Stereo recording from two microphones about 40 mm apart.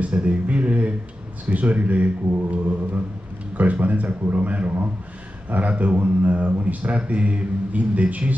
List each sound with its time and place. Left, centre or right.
0.0 s speech: right